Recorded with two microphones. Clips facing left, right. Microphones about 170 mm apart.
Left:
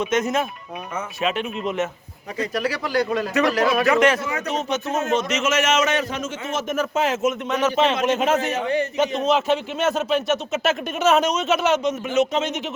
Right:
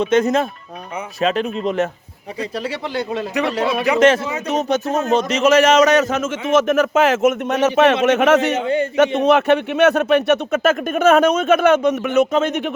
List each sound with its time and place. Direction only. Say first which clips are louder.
0.0 s speech: right 6 dB; 30° right (ahead or behind)
4.5 s speech: right 7 dB; 35° right (ahead or behind)
6.1 s a man's voice: right 10 dB; 90° right
7.2 s speech: right 6 dB; 50° right (ahead or behind)
7.5 s a man's voice: right 4 dB; 65° right (ahead or behind)
8.5 s speech: right 4 dB; 25° right (ahead or behind)
9.2 s speech: right 6 dB; 60° right (ahead or behind)